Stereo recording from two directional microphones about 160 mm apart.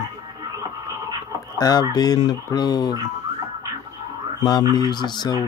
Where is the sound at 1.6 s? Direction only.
25° left (ahead or behind).